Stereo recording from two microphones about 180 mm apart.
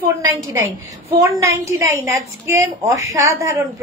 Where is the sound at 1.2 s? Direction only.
15° right (ahead or behind).